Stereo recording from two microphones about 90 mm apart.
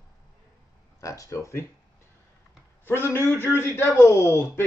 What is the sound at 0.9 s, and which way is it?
Speech, 35° left (ahead or behind).